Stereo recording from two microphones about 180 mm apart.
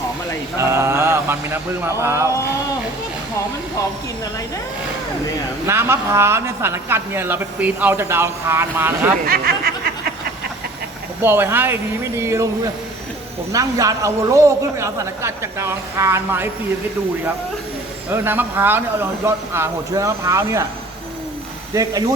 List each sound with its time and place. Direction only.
0.6 s speech: 15° right (ahead or behind)
5.6 s speech: 15° right (ahead or behind)
9.2 s speech: 55° right (ahead or behind)
11.2 s speech: 10° right (ahead or behind)
18.1 s speech: 10° right (ahead or behind)
21.8 s speech: 20° right (ahead or behind)